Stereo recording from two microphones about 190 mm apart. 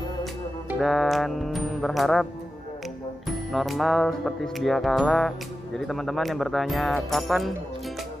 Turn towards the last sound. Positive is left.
turn(degrees=0)  # may be behind; listen again after turning